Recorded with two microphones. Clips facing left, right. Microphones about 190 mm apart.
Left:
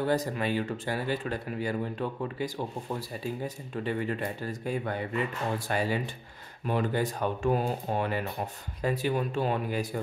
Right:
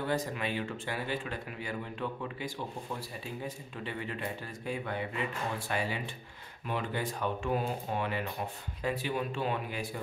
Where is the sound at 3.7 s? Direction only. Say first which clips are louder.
Left 8 dB; 45° left (ahead or behind).